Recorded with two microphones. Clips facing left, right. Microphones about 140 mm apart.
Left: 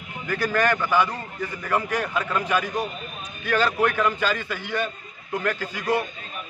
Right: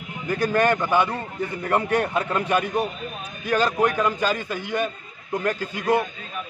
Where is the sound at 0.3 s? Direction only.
20° right (ahead or behind).